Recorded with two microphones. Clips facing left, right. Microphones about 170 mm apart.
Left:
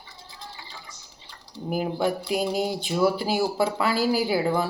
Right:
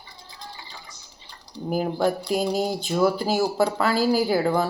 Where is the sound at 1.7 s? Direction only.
40° right (ahead or behind).